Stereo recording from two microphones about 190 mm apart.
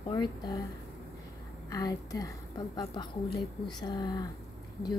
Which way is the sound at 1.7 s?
20° left (ahead or behind).